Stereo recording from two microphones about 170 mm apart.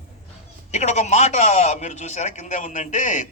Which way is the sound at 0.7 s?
45° left (ahead or behind).